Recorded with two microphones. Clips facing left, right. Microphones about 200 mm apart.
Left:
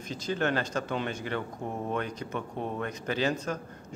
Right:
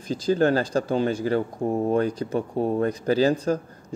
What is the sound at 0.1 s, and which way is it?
Speech, 35° right (ahead or behind).